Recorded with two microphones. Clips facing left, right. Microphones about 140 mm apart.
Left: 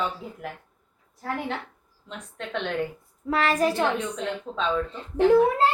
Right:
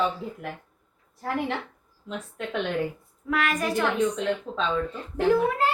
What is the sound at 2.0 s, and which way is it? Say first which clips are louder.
Speech: right 3 dB; 5° right (ahead or behind).